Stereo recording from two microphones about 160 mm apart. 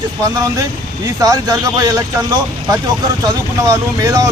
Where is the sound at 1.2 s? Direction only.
25° right (ahead or behind).